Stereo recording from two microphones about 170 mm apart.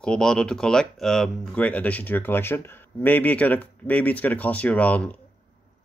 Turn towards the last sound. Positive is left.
turn(degrees=10)  # may be behind; listen again after turning